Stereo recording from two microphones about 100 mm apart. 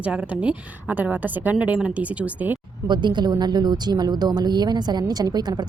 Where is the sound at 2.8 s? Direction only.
50° right (ahead or behind).